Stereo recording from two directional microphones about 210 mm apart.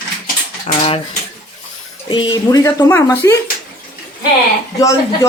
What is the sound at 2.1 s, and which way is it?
Speech, 20° left (ahead or behind).